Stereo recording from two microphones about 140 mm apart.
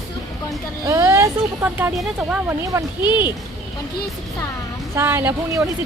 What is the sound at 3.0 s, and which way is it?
Speech, 35° left (ahead or behind).